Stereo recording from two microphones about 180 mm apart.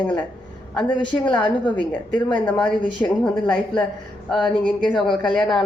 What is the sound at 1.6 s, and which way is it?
A woman's voice, 10° left (ahead or behind).